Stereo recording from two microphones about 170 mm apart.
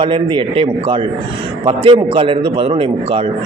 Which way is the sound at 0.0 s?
30° right (ahead or behind).